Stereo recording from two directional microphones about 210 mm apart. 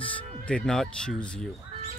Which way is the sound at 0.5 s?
5° left (ahead or behind).